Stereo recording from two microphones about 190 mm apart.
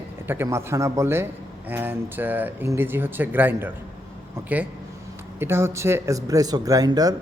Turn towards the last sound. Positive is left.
turn(degrees=-20)  # may be behind; listen again after turning